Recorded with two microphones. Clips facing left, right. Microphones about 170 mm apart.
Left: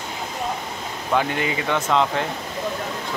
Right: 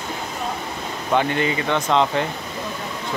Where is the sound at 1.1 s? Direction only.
5° left (ahead or behind).